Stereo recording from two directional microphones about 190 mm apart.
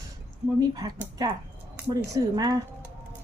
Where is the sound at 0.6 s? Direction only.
20° right (ahead or behind).